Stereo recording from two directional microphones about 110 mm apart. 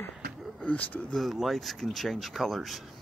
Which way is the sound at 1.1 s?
Centre (ahead or behind).